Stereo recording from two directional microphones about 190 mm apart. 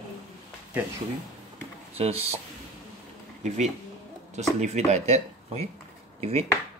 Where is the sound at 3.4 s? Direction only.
35° right (ahead or behind).